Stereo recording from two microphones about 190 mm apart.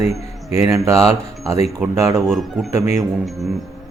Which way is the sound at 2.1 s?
Centre (ahead or behind).